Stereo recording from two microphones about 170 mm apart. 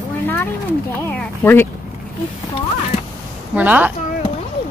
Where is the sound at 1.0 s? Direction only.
15° left (ahead or behind).